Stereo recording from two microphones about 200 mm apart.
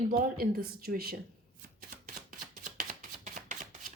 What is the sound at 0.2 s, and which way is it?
Speech, 45° right (ahead or behind).